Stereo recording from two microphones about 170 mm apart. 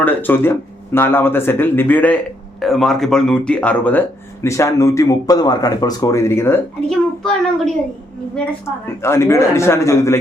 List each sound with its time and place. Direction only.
0.0 s speech: 10° left (ahead or behind)
6.9 s a child's voice: 5° left (ahead or behind)
8.6 s speech: 15° left (ahead or behind)